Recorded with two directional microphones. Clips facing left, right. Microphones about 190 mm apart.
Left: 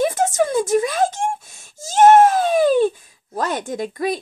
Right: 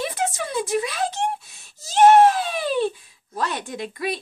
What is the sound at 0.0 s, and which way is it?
Whimper, 45° left (ahead or behind).